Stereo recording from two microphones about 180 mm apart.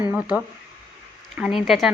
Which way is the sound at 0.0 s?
5° right (ahead or behind).